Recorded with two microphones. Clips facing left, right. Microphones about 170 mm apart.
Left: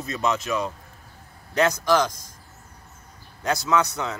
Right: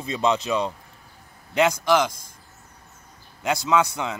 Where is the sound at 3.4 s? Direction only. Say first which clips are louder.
Right 1 dB; 10° right (ahead or behind).